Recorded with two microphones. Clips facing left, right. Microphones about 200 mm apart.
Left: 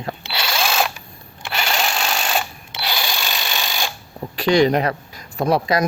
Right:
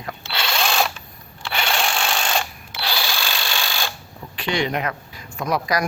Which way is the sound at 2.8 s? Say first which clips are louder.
Left 1 dB; 20° left (ahead or behind).